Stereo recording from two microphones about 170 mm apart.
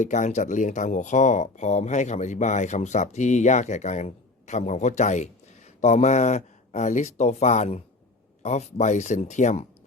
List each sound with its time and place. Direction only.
0.0 s speech: 45° left (ahead or behind)